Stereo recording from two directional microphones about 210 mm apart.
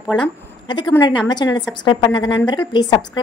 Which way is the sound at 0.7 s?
20° left (ahead or behind).